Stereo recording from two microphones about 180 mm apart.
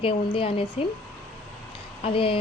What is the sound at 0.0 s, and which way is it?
Speech, 30° left (ahead or behind).